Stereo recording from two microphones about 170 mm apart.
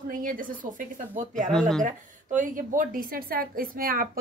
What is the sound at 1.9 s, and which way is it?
A woman's voice, 50° right (ahead or behind).